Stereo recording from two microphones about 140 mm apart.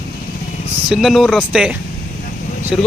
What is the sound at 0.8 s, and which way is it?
Speech, centre (ahead or behind).